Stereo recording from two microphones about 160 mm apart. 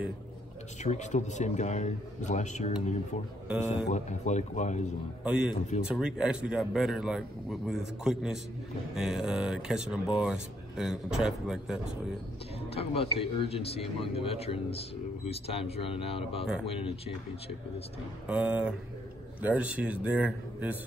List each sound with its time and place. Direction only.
0.8 s a man's voice: 45° left (ahead or behind)
3.4 s a man's voice: 10° right (ahead or behind)
3.9 s a man's voice: 50° left (ahead or behind)
5.2 s speech: 5° right (ahead or behind)
12.7 s speech: 40° left (ahead or behind)
18.3 s a man's voice: 5° right (ahead or behind)